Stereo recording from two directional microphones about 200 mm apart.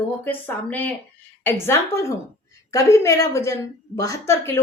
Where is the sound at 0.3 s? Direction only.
10° left (ahead or behind).